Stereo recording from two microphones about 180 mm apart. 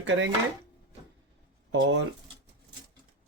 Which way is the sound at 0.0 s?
90° right.